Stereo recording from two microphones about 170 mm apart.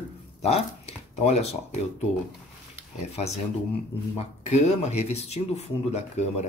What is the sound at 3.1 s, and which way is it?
Speech, 40° left (ahead or behind).